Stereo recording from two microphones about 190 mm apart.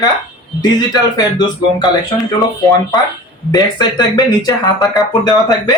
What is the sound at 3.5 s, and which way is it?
Speech, 20° left (ahead or behind).